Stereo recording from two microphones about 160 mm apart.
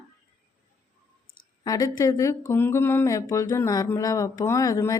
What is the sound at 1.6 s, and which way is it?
Speech, 20° left (ahead or behind).